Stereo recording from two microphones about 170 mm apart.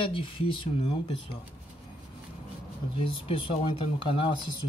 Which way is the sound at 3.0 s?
30° left (ahead or behind).